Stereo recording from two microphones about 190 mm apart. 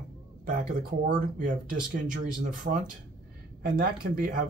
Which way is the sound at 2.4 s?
45° right (ahead or behind).